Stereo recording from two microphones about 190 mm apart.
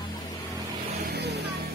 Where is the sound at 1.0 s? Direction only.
60° right (ahead or behind).